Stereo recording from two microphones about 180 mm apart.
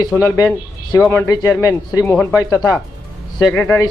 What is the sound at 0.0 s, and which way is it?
A man's voice, 20° left (ahead or behind).